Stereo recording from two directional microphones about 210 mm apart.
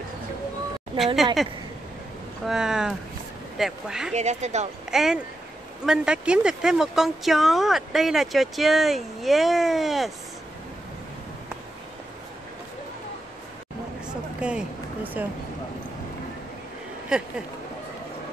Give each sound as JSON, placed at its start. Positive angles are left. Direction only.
{"t": 0.9, "sound": "speech", "side_deg": 0}
{"t": 4.1, "sound": "speech", "side_deg": -35}
{"t": 4.9, "sound": "speech", "side_deg": 0}
{"t": 14.4, "sound": "speech", "side_deg": -5}